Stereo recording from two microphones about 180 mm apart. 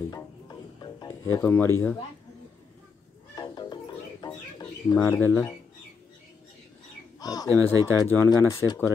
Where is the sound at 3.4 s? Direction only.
25° left (ahead or behind).